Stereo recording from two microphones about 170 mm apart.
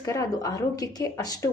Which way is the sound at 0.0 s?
20° left (ahead or behind).